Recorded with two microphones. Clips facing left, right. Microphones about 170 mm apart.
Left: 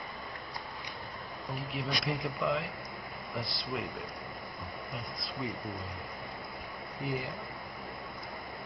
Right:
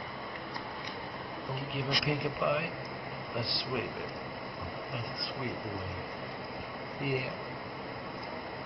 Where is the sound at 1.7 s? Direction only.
Centre (ahead or behind).